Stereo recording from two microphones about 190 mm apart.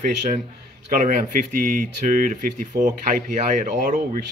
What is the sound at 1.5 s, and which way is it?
Speech, 45° right (ahead or behind).